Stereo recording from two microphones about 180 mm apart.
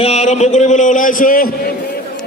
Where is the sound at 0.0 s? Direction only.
40° left (ahead or behind).